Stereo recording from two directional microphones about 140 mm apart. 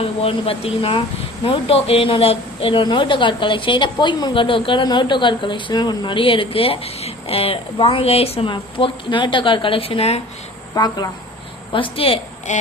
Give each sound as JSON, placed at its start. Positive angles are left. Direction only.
{"t": 0.0, "sound": "a woman's voice", "side_deg": 45}
{"t": 10.8, "sound": "speech", "side_deg": 30}
{"t": 11.7, "sound": "a woman's voice", "side_deg": 40}
{"t": 12.5, "sound": "a sound", "side_deg": 60}